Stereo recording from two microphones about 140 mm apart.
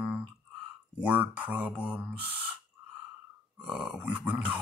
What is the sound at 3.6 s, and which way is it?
Speech, 5° right (ahead or behind).